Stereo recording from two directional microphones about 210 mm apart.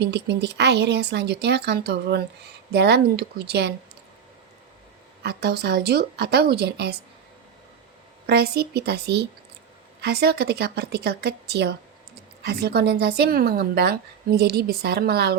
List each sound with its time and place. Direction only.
0.0 s a woman's voice: 55° right (ahead or behind)
5.2 s a woman's voice: 50° right (ahead or behind)
8.3 s a woman's voice: 50° right (ahead or behind)